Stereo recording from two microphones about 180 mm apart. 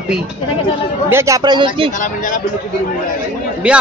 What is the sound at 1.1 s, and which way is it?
Speech, 20° right (ahead or behind).